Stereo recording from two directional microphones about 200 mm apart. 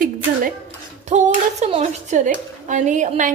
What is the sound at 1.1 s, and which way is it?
A woman's voice, 35° right (ahead or behind).